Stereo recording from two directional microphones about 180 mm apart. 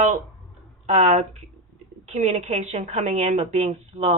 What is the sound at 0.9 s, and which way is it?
A woman's voice, 40° right (ahead or behind).